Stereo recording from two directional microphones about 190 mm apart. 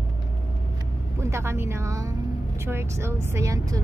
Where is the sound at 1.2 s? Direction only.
15° right (ahead or behind).